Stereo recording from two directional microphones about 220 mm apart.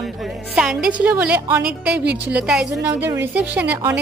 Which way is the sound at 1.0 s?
5° right (ahead or behind).